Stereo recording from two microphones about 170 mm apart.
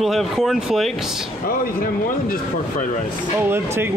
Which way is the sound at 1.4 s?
55° left (ahead or behind).